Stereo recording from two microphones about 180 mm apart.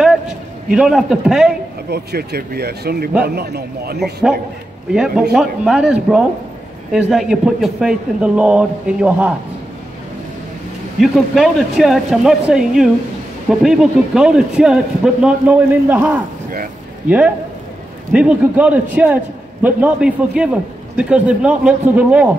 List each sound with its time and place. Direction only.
0.7 s speech: centre (ahead or behind)
1.9 s speech: 60° right (ahead or behind)
4.0 s speech: centre (ahead or behind)
11.0 s a man's voice: centre (ahead or behind)
18.1 s a man's voice: 5° right (ahead or behind)